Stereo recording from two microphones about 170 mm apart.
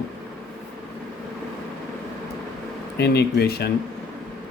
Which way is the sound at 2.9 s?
75° left (ahead or behind).